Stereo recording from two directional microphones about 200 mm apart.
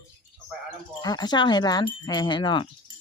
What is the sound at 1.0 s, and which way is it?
Speech, 20° left (ahead or behind).